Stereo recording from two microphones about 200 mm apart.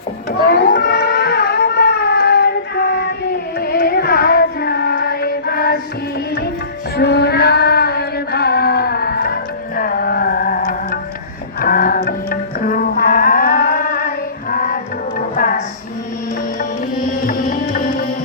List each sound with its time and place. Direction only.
0.4 s a sound: 45° left (ahead or behind)
3.6 s music: 50° left (ahead or behind)
6.9 s female singing: 55° left (ahead or behind)
11.6 s music: 45° left (ahead or behind)
17.2 s music: 40° left (ahead or behind)